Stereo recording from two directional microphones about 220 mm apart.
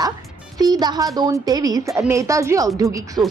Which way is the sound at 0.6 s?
20° right (ahead or behind).